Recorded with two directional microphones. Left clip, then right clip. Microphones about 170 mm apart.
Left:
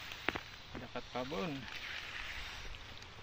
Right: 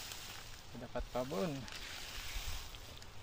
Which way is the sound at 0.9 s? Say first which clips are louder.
Right 1 dB; 65° right (ahead or behind).